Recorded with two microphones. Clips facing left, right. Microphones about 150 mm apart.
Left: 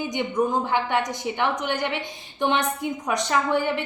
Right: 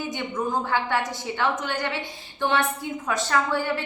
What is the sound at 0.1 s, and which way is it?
A woman's voice, 20° left (ahead or behind).